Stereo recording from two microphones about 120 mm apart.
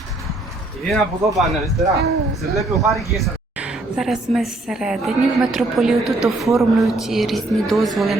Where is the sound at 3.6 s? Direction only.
5° right (ahead or behind).